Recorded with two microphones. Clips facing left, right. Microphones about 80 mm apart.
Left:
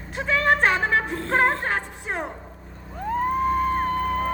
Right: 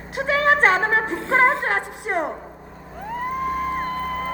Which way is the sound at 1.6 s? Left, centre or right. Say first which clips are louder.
Right 3 dB; right.